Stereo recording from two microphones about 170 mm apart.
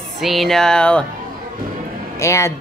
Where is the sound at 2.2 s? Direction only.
15° left (ahead or behind).